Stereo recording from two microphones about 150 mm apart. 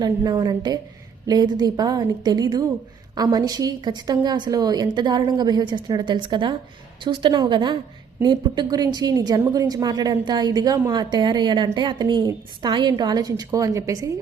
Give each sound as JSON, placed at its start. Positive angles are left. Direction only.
{"t": 0.0, "sound": "a woman's voice", "side_deg": -25}